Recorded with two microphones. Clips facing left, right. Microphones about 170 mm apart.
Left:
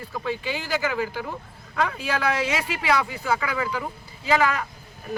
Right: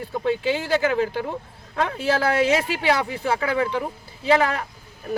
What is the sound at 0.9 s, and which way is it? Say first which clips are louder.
Speech: right 5 dB; 25° right (ahead or behind).